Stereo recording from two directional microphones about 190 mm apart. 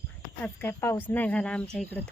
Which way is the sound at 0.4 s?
10° left (ahead or behind).